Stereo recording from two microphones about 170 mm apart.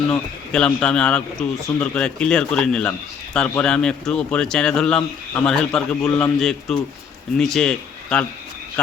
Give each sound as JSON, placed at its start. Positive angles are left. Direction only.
{"t": 0.1, "sound": "a man's voice", "side_deg": 5}